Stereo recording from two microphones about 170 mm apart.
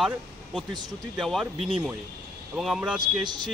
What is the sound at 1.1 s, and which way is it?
Speech, centre (ahead or behind).